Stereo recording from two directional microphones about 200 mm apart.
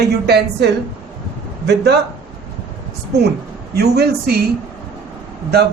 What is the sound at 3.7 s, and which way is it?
Speech, 55° right (ahead or behind).